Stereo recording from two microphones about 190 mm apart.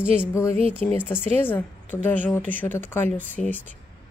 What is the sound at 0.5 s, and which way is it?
Speech, 30° right (ahead or behind).